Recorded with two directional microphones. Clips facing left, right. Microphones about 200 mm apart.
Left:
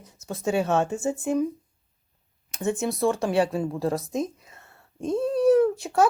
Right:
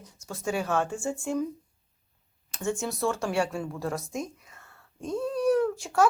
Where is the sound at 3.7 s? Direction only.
30° left (ahead or behind).